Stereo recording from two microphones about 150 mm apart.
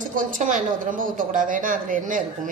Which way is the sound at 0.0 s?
60° right (ahead or behind).